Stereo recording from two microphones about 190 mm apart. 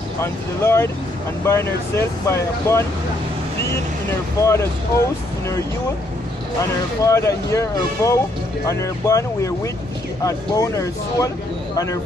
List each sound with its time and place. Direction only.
0.2 s speech: 15° left (ahead or behind)
4.4 s speech: 15° left (ahead or behind)
7.0 s speech: 15° left (ahead or behind)